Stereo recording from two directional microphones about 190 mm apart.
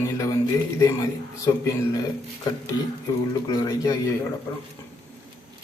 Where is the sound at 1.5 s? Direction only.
20° left (ahead or behind).